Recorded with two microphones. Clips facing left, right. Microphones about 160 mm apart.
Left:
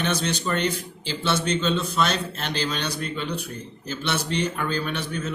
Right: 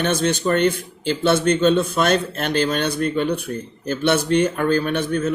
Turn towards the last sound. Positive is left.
turn(degrees=-50)  # may be behind; listen again after turning